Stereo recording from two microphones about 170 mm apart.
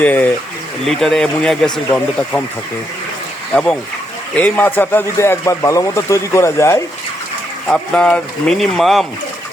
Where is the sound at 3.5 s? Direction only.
5° left (ahead or behind).